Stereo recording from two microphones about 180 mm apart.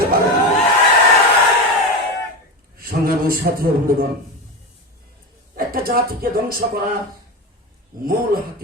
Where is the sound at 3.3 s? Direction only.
55° right (ahead or behind).